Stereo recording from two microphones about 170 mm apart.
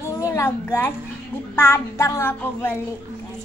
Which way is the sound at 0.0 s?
15° left (ahead or behind).